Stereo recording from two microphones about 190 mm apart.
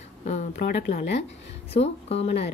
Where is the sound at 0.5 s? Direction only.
55° left (ahead or behind).